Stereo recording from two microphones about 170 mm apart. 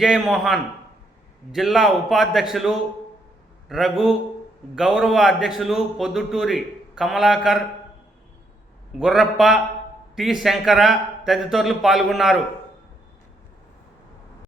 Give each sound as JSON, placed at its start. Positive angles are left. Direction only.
{"t": 0.0, "sound": "a man's voice", "side_deg": 0}
{"t": 9.0, "sound": "a man's voice", "side_deg": 0}